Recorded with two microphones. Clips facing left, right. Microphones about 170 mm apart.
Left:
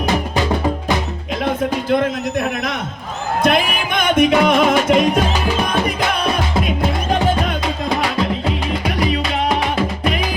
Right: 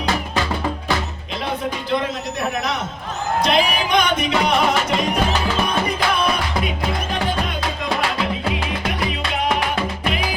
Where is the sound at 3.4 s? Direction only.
50° left (ahead or behind).